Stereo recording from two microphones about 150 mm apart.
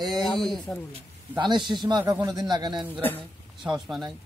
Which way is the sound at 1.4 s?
30° right (ahead or behind).